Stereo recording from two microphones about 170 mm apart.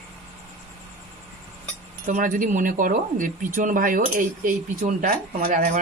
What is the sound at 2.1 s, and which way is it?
Speech, 50° right (ahead or behind).